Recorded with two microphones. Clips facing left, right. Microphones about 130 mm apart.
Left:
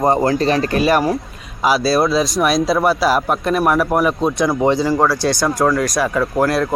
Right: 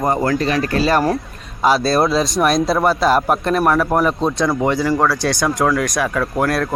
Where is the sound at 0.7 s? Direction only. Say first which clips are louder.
Even; 20° left (ahead or behind).